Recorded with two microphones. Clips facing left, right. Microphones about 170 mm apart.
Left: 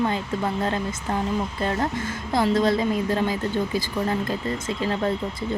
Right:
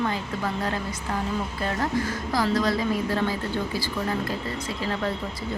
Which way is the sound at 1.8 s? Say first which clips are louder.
Even; 25° left (ahead or behind).